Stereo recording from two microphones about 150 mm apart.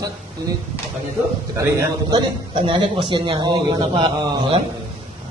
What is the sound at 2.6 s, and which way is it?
A man's voice, 35° right (ahead or behind).